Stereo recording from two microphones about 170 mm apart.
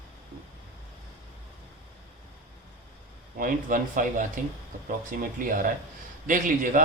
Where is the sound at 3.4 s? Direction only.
55° right (ahead or behind).